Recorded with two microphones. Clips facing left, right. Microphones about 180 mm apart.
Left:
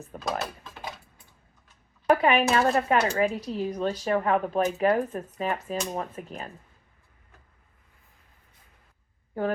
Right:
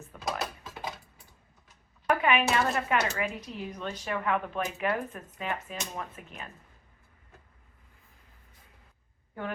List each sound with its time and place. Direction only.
0.1 s dishes: 40° left (ahead or behind)
2.0 s a sound: 35° left (ahead or behind)
2.5 s speech: 35° left (ahead or behind)